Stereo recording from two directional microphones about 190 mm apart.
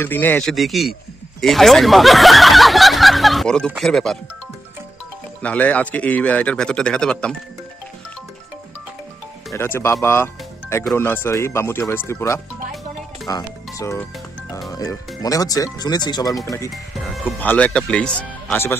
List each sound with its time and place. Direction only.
0.0 s speech: 10° left (ahead or behind)
5.4 s a man's voice: 5° left (ahead or behind)
9.5 s a man's voice: 15° left (ahead or behind)
10.0 s music: 10° left (ahead or behind)
11.0 s a man's voice: 10° left (ahead or behind)
16.7 s a man's voice: centre (ahead or behind)